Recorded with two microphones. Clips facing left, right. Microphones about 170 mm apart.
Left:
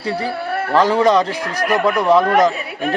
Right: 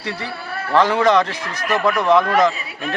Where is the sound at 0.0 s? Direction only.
35° left (ahead or behind).